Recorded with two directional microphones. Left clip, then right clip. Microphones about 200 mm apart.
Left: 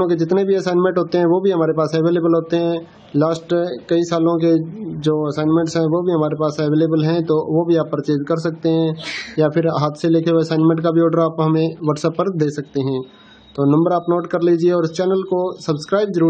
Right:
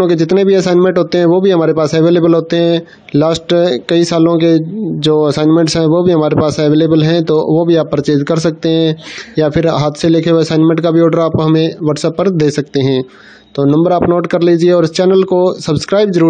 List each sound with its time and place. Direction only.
0.0 s a man's voice: 35° right (ahead or behind)